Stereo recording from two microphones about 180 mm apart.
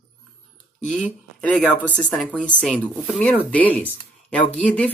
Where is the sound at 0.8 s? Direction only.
5° left (ahead or behind).